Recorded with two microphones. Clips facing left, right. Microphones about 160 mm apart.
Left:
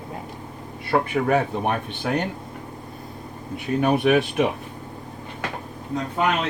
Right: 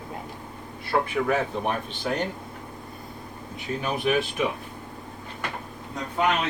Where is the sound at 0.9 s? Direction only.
60° left (ahead or behind).